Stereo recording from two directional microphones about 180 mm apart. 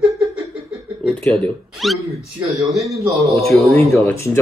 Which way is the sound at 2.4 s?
15° right (ahead or behind).